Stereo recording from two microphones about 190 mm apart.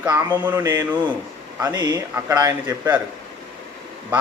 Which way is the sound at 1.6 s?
20° right (ahead or behind).